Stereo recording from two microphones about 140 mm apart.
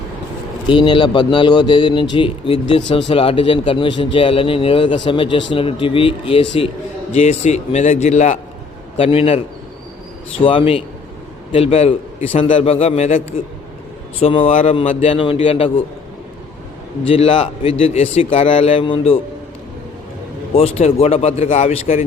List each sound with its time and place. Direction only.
0.7 s speech: 35° left (ahead or behind)
7.1 s a man's voice: 50° left (ahead or behind)
9.0 s a man's voice: 45° left (ahead or behind)
10.4 s a man's voice: 40° left (ahead or behind)
17.1 s a man's voice: 40° left (ahead or behind)
20.5 s a man's voice: 45° left (ahead or behind)